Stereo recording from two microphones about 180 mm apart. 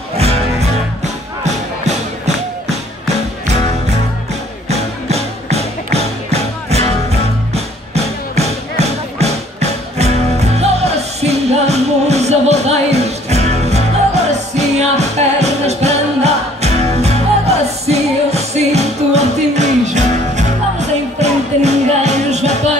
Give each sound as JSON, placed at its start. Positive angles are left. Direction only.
{"t": 0.2, "sound": "music", "side_deg": -35}
{"t": 4.6, "sound": "music", "side_deg": -35}